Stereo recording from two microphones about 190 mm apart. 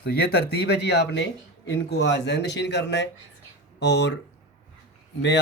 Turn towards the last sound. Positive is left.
turn(degrees=65)  # may be behind; listen again after turning